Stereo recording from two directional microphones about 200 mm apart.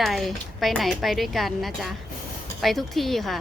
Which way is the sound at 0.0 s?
Centre (ahead or behind).